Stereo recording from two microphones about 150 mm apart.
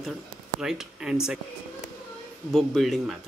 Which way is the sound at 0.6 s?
5° right (ahead or behind).